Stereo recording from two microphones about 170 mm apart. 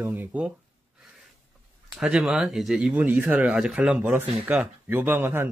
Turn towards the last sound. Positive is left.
turn(degrees=-10)  # may be behind; listen again after turning